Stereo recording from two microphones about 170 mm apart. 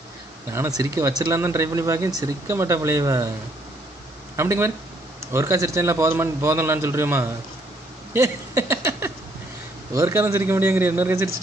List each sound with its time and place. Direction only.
0.5 s speech: 20° right (ahead or behind)
4.4 s a man's voice: 15° right (ahead or behind)
8.1 s a sound: 15° right (ahead or behind)
9.9 s a man's voice: 15° right (ahead or behind)